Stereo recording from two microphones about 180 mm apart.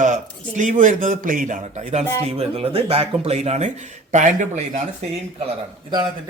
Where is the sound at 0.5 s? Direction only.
45° right (ahead or behind).